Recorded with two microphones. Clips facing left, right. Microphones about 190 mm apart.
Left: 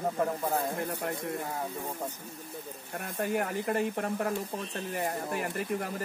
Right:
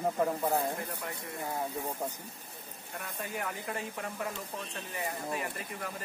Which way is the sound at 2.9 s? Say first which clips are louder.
Left 8 dB; 60° left (ahead or behind).